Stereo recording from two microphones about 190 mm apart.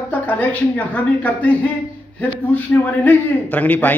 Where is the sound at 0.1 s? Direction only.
10° left (ahead or behind).